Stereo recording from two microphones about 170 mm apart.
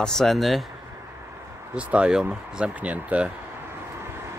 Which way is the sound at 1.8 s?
5° right (ahead or behind).